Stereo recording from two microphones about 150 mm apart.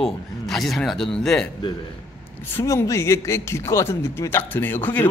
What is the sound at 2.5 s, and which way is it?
Speech, 20° left (ahead or behind).